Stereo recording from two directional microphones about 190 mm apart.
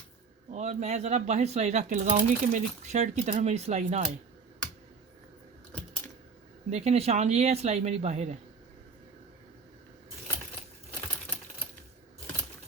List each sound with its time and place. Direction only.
0.5 s speech: 35° right (ahead or behind)
6.7 s speech: 35° right (ahead or behind)